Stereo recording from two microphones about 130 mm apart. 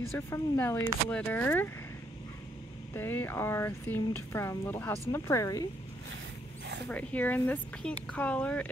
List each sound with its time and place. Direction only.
0.3 s speech: 15° left (ahead or behind)
2.9 s speech: 15° left (ahead or behind)
6.9 s speech: 10° left (ahead or behind)